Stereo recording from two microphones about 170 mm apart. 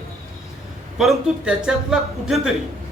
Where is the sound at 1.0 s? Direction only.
Centre (ahead or behind).